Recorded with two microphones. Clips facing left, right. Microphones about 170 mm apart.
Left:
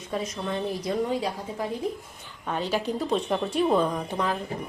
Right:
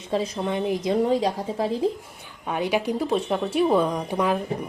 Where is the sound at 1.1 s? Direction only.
35° right (ahead or behind).